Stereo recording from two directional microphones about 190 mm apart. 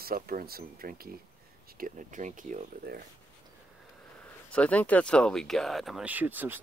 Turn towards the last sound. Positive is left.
turn(degrees=-10)  # may be behind; listen again after turning